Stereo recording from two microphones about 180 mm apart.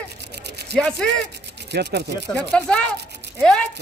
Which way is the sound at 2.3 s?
5° left (ahead or behind).